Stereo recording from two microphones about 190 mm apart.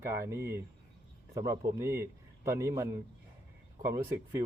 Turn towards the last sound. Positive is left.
turn(degrees=-15)  # may be behind; listen again after turning